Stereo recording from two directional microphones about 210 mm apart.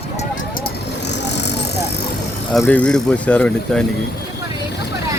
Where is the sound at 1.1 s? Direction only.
55° left (ahead or behind).